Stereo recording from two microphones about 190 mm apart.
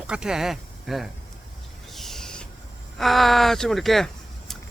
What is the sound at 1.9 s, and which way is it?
Owl, centre (ahead or behind).